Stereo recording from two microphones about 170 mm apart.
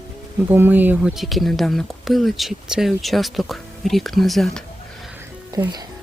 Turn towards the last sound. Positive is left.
turn(degrees=-25)  # may be behind; listen again after turning